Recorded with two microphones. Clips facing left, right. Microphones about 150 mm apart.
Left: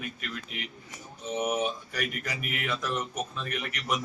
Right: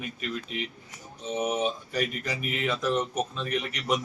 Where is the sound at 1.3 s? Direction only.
30° right (ahead or behind).